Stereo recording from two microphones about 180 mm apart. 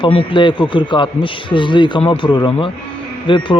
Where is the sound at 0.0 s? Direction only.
30° left (ahead or behind).